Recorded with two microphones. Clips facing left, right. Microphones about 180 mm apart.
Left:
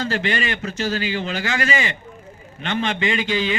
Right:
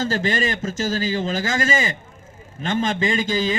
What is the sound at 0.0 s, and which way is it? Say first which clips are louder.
A man's voice: right 1 dB; 40° right (ahead or behind).